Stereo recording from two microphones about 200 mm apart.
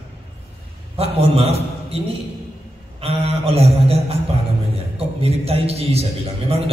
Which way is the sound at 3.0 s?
30° right (ahead or behind).